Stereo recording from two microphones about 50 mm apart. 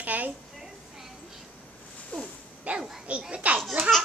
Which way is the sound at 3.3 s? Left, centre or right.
Right.